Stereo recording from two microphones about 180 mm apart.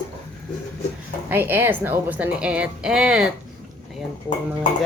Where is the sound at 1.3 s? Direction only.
10° right (ahead or behind).